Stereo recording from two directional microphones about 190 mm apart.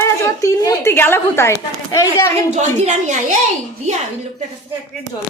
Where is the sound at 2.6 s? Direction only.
40° right (ahead or behind).